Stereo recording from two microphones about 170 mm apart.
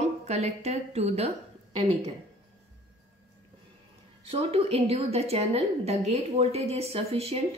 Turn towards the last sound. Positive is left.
turn(degrees=-35)  # may be behind; listen again after turning